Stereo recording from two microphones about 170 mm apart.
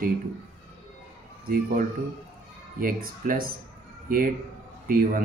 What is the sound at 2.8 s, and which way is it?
A man's voice, 55° right (ahead or behind).